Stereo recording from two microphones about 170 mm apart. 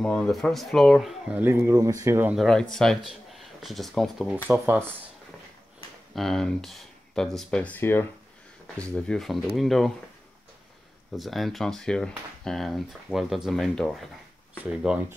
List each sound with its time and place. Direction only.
0.0 s speech: 5° left (ahead or behind)
1.4 s speech: 15° right (ahead or behind)
2.3 s speech: 5° left (ahead or behind)
6.1 s speech: centre (ahead or behind)
11.1 s speech: centre (ahead or behind)
14.6 s speech: 10° right (ahead or behind)